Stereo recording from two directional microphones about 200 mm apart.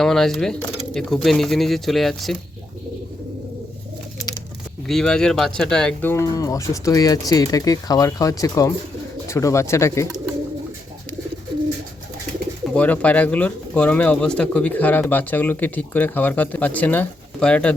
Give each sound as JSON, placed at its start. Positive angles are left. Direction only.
{"t": 0.0, "sound": "speech", "side_deg": 0}
{"t": 4.9, "sound": "speech", "side_deg": 0}
{"t": 12.7, "sound": "speech", "side_deg": 5}